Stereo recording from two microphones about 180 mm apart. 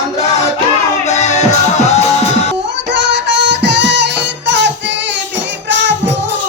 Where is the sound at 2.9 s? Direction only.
75° right (ahead or behind).